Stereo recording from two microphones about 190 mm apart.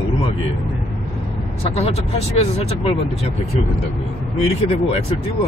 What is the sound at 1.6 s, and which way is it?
Speech, 30° left (ahead or behind).